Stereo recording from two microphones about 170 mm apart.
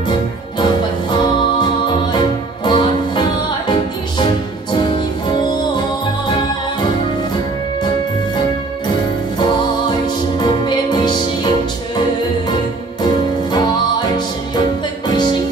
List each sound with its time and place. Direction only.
2.1 s music: 25° left (ahead or behind)
9.8 s music: 25° left (ahead or behind)
13.0 s music: 25° left (ahead or behind)